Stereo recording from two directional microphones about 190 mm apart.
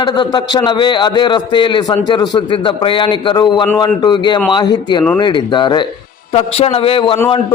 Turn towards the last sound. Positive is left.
turn(degrees=30)  # may be behind; listen again after turning